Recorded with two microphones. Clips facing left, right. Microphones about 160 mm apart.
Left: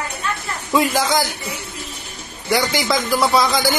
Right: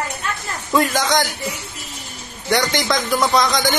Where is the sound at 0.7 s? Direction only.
5° left (ahead or behind).